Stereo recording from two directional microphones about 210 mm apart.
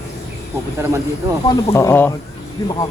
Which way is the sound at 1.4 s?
15° left (ahead or behind).